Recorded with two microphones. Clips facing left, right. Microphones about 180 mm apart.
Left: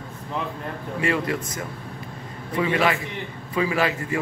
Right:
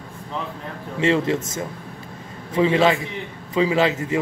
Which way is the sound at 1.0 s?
25° right (ahead or behind).